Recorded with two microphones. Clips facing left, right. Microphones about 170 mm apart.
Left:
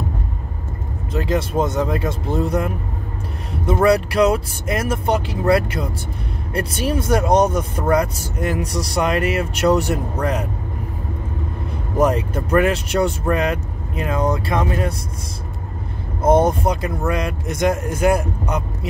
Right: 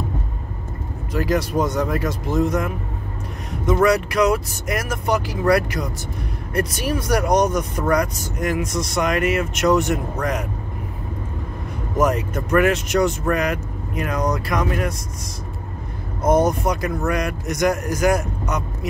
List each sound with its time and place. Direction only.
1.1 s speech: 25° left (ahead or behind)
12.0 s speech: 30° left (ahead or behind)
16.2 s speech: 30° left (ahead or behind)